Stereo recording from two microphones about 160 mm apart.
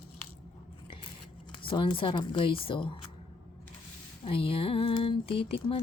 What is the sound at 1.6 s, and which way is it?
Speech, 30° left (ahead or behind).